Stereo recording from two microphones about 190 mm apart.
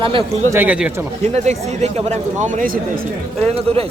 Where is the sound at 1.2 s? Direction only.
35° right (ahead or behind).